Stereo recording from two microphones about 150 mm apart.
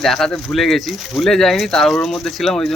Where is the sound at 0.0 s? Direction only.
Centre (ahead or behind).